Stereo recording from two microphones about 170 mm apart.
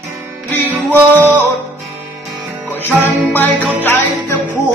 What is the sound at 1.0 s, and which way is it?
Music, 15° right (ahead or behind).